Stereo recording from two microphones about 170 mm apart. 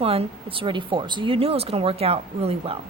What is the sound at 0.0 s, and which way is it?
Speech, 35° right (ahead or behind).